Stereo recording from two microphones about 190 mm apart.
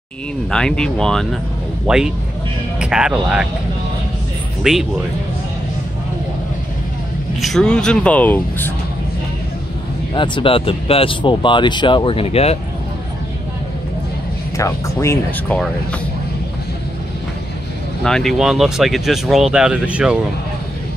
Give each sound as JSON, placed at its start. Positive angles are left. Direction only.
{"t": 0.5, "sound": "speech", "side_deg": 5}
{"t": 4.6, "sound": "speech", "side_deg": -5}
{"t": 7.3, "sound": "speech", "side_deg": 0}
{"t": 10.1, "sound": "speech", "side_deg": 25}
{"t": 14.6, "sound": "speech", "side_deg": 15}
{"t": 18.0, "sound": "speech", "side_deg": 0}